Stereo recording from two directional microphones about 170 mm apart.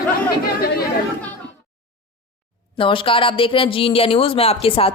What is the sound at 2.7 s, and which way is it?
Speech, 30° left (ahead or behind).